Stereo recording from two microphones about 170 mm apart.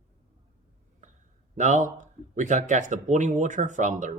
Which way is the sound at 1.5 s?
45° right (ahead or behind).